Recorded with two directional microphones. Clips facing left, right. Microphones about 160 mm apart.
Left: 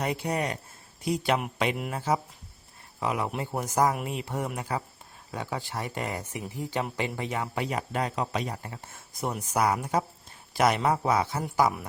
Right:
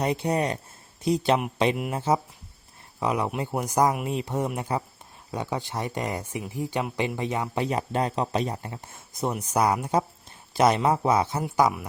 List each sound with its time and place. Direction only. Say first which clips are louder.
0.0 s speech: right 4 dB; 25° right (ahead or behind)